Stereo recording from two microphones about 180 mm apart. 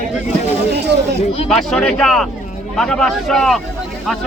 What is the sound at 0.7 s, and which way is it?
Speech, 65° right (ahead or behind).